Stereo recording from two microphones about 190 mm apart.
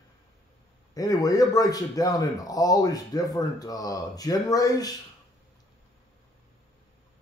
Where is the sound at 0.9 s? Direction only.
20° left (ahead or behind).